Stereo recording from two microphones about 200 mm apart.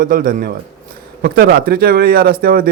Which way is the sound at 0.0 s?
45° right (ahead or behind).